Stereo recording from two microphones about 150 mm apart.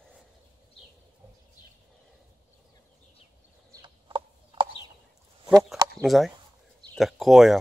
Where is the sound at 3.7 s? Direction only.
30° right (ahead or behind).